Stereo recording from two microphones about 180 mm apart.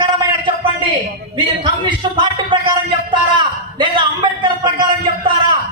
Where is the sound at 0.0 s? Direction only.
30° right (ahead or behind).